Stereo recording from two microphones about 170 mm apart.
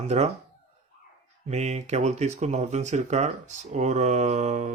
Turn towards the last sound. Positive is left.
turn(degrees=-40)  # may be behind; listen again after turning